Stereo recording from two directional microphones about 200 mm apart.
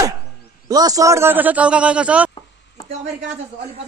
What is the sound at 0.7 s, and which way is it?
A man's voice, 20° right (ahead or behind).